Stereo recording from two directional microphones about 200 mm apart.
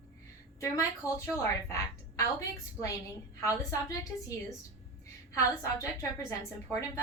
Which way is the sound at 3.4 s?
15° left (ahead or behind).